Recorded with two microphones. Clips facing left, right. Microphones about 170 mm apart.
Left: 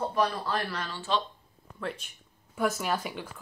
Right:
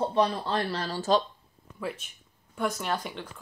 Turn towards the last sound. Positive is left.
turn(degrees=5)  # may be behind; listen again after turning